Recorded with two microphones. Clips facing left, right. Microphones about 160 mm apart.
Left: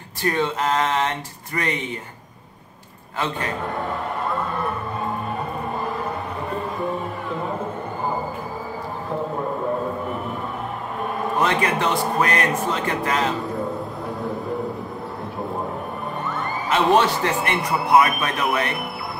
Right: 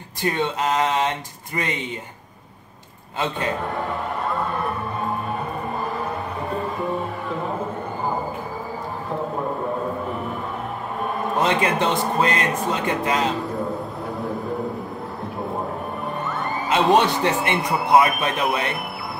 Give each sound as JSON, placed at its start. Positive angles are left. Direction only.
{"t": 0.2, "sound": "speech", "side_deg": -15}
{"t": 3.2, "sound": "speech", "side_deg": -20}
{"t": 11.4, "sound": "speech", "side_deg": -20}
{"t": 16.6, "sound": "speech", "side_deg": -20}